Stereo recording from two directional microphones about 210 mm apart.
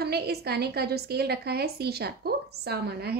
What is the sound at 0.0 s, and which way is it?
Speech, 50° right (ahead or behind).